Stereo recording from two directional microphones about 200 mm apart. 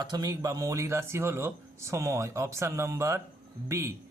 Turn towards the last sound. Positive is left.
turn(degrees=-15)  # may be behind; listen again after turning